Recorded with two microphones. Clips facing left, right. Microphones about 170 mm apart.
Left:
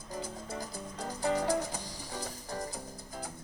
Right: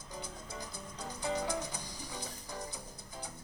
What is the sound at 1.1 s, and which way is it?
Music, 40° left (ahead or behind).